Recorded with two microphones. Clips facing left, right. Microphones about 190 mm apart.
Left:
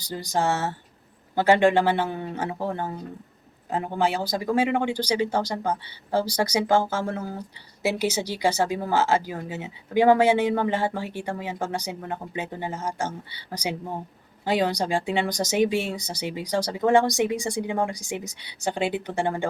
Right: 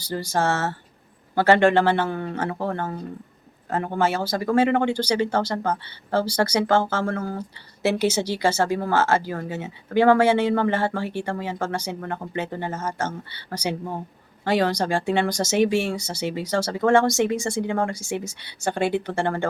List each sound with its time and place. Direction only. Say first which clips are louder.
0.0 s speech: right 2 dB; 15° left (ahead or behind)